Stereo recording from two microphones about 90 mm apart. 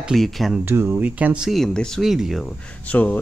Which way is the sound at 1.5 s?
5° left (ahead or behind).